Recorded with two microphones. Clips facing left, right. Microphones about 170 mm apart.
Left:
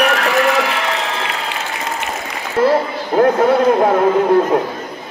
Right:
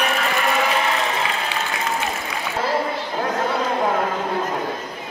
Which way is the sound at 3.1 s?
60° left (ahead or behind).